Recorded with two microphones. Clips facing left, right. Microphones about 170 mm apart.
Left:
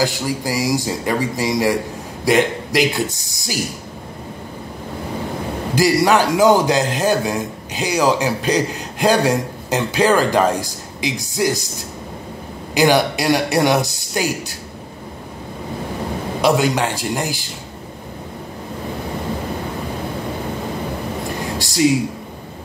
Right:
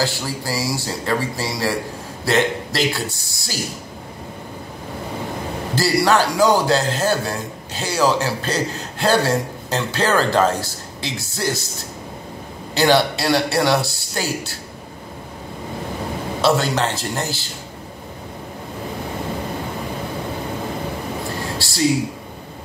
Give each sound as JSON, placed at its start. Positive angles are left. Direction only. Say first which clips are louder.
{"t": 0.0, "sound": "a man's voice", "louder": "left 4 dB", "side_deg": 15}
{"t": 5.8, "sound": "a man's voice", "louder": "left 2 dB", "side_deg": 15}
{"t": 12.7, "sound": "a man's voice", "louder": "left 1 dB", "side_deg": 15}
{"t": 16.3, "sound": "a man's voice", "louder": "left 2 dB", "side_deg": 15}
{"t": 21.5, "sound": "a sound", "louder": "left 4 dB", "side_deg": 20}